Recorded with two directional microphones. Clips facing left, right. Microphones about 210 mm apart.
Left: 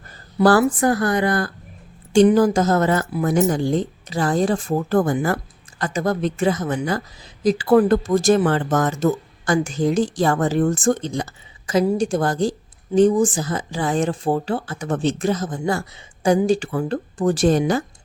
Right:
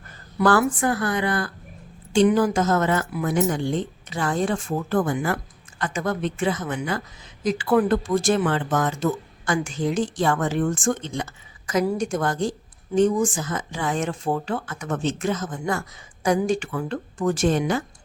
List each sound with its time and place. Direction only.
0.3 s speech: 35° left (ahead or behind)